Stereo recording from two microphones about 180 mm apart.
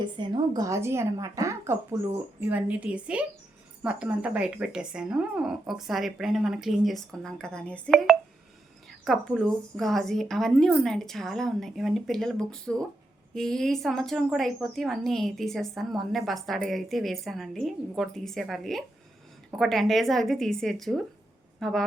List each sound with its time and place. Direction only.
0.0 s a woman's voice: 25° right (ahead or behind); by 21.8 s centre (ahead or behind)